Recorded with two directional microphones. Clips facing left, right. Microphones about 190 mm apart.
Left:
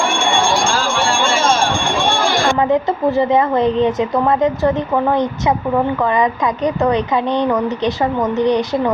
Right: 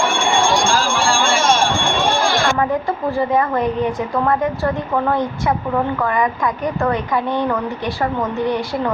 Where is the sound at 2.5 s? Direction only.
20° left (ahead or behind).